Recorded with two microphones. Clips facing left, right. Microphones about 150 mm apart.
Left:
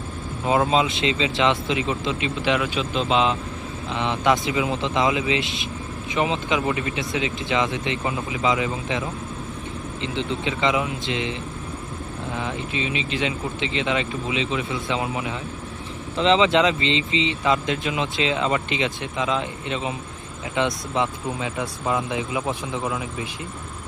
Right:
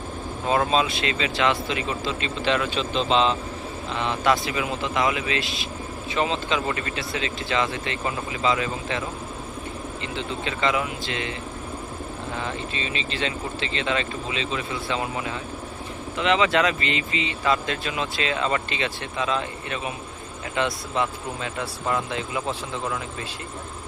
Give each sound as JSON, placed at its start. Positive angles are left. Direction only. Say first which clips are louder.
{"t": 0.4, "sound": "speech", "louder": "left 2 dB", "side_deg": 15}
{"t": 12.4, "sound": "speech", "louder": "left 4 dB", "side_deg": 15}
{"t": 16.1, "sound": "speech", "louder": "left 3 dB", "side_deg": 25}